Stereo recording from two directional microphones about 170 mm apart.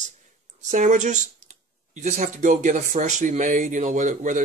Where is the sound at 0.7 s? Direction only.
45° right (ahead or behind).